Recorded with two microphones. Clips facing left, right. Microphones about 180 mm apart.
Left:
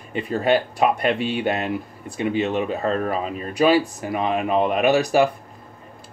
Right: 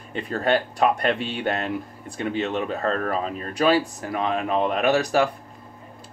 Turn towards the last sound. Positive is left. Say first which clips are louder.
# left 3 dB
turn(degrees=10)  # may be behind; listen again after turning